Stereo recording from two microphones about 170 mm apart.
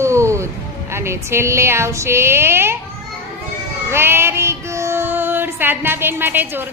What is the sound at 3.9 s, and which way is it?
Child singing, 15° right (ahead or behind).